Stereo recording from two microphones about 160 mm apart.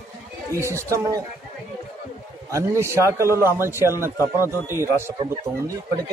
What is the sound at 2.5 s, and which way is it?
A man's voice, 20° right (ahead or behind).